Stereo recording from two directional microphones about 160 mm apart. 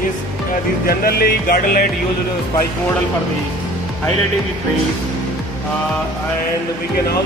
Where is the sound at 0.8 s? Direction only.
70° left (ahead or behind).